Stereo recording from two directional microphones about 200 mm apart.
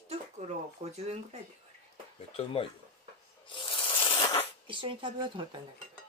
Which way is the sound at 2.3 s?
30° left (ahead or behind).